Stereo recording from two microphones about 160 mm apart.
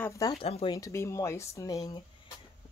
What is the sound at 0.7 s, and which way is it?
Speech, 20° left (ahead or behind).